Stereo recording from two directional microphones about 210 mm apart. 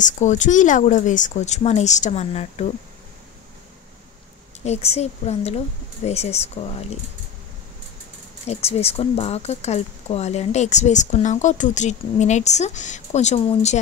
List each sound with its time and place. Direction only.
0.0 s speech: 35° left (ahead or behind)
4.6 s a woman's voice: 30° left (ahead or behind)
8.5 s speech: 30° left (ahead or behind)